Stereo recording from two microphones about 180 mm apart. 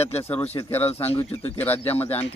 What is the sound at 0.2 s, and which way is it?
Speech, 10° left (ahead or behind).